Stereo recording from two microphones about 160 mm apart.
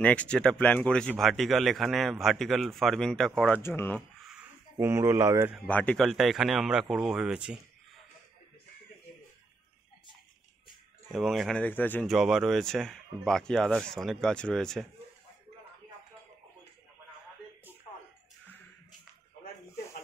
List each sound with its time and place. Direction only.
0.0 s speech: 10° left (ahead or behind)
3.5 s speech: 15° left (ahead or behind)
4.2 s a sound: 10° right (ahead or behind)
5.7 s speech: 10° left (ahead or behind)
11.1 s speech: centre (ahead or behind)
12.1 s speech: centre (ahead or behind)